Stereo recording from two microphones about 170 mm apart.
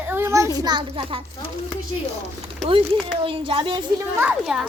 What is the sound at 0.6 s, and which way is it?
Speech, 25° right (ahead or behind).